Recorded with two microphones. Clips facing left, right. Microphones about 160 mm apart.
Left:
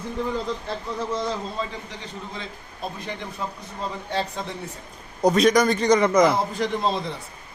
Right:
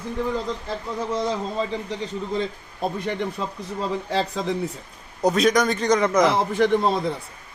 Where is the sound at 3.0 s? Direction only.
60° right (ahead or behind).